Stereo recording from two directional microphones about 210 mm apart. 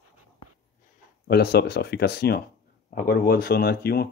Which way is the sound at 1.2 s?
50° left (ahead or behind).